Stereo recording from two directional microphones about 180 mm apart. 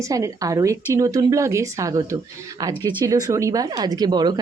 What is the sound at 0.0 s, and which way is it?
A woman's voice, 20° right (ahead or behind).